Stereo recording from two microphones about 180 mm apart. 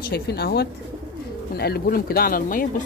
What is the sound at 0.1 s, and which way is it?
Speech, 60° left (ahead or behind).